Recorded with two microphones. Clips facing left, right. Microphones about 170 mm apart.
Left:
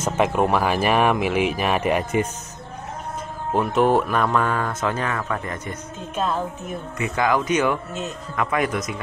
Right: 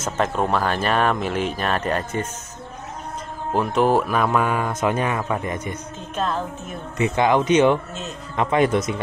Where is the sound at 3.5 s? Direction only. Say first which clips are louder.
Even; centre (ahead or behind); by 5.7 s 20° right (ahead or behind).